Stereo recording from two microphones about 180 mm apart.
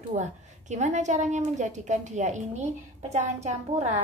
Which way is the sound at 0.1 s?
40° right (ahead or behind).